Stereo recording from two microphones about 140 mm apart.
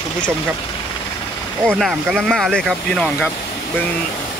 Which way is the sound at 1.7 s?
Centre (ahead or behind).